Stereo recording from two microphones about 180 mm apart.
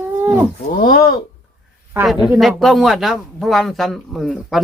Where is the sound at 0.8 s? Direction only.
50° left (ahead or behind).